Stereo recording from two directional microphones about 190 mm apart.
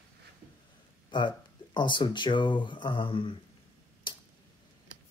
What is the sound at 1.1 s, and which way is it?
Speech, 25° left (ahead or behind).